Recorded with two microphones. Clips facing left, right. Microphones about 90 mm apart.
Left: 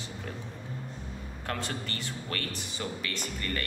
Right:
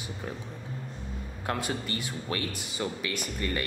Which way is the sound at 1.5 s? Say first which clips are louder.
Right 4 dB; 15° right (ahead or behind).